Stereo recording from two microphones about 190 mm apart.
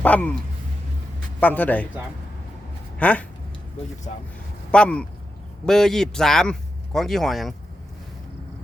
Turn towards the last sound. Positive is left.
turn(degrees=0)  # may be behind; listen again after turning